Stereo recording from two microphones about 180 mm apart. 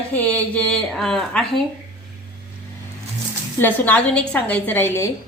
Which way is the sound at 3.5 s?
10° left (ahead or behind).